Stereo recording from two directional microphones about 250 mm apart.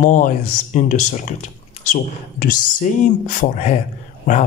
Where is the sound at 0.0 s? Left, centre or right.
Left.